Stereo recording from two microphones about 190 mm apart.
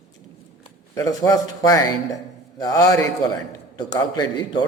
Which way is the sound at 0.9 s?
15° left (ahead or behind).